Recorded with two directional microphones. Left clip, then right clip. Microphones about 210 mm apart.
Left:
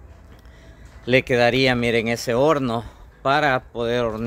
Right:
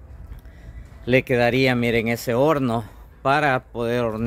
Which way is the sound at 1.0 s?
10° right (ahead or behind).